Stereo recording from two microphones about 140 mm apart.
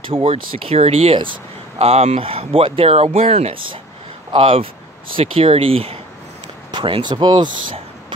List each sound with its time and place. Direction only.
0.1 s speech: 45° right (ahead or behind)